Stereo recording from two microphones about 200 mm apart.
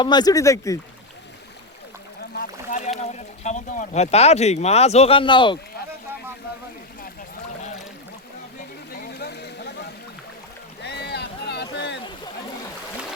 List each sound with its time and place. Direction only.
0.0 s speech: 20° left (ahead or behind)
2.6 s rowboat: 40° left (ahead or behind)
3.0 s speech: 35° left (ahead or behind)
8.9 s a sound: 50° left (ahead or behind)
10.8 s boat: 55° left (ahead or behind)